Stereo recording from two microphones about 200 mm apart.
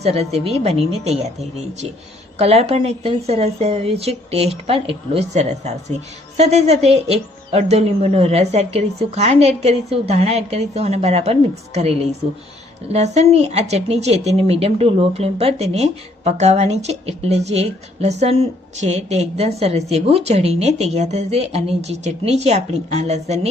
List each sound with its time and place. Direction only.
0.0 s speech: 30° right (ahead or behind)